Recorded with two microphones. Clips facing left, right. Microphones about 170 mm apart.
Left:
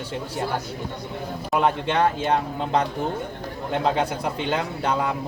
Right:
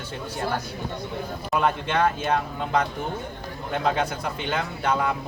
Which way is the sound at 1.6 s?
25° left (ahead or behind).